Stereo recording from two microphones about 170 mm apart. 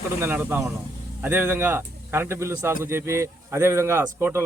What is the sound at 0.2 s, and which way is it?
Speech, 10° right (ahead or behind).